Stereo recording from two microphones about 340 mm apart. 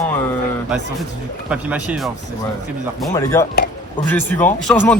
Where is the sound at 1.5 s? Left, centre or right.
Centre.